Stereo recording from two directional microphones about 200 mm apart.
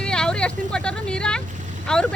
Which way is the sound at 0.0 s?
5° left (ahead or behind).